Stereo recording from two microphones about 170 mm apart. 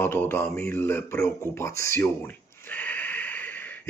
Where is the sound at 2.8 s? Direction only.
10° left (ahead or behind).